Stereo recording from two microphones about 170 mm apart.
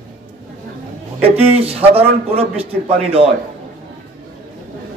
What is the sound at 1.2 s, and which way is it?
A man's voice, 35° right (ahead or behind).